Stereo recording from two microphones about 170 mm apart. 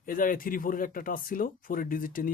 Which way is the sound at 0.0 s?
55° left (ahead or behind).